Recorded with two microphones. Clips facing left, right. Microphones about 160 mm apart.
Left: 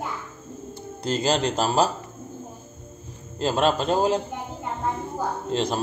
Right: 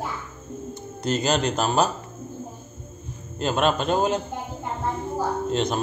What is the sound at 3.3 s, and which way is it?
Speech, 30° left (ahead or behind).